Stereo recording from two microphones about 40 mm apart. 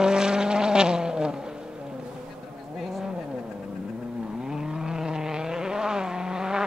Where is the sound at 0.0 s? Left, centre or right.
Centre.